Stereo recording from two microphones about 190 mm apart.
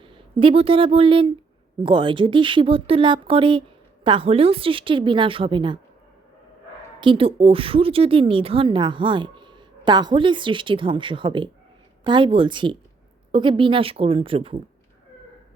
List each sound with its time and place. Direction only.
0.0 s a woman's voice: 25° right (ahead or behind)
7.0 s a woman's voice: 30° right (ahead or behind)